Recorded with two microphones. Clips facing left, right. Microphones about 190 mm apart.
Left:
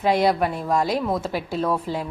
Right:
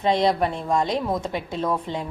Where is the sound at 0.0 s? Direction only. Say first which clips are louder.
Left 1 dB; 5° left (ahead or behind).